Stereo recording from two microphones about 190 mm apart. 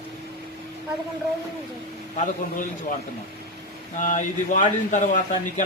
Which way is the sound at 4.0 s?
45° left (ahead or behind).